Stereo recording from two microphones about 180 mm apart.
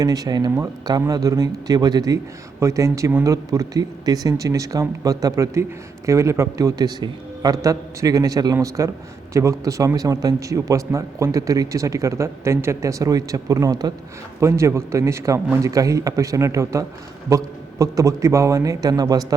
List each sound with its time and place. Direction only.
0.0 s speech: 20° right (ahead or behind)